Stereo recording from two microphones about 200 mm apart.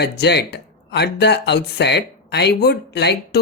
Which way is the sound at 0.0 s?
55° left (ahead or behind).